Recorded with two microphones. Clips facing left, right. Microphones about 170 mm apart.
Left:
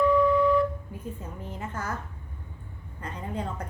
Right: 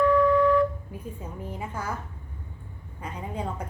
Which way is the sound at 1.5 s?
10° right (ahead or behind).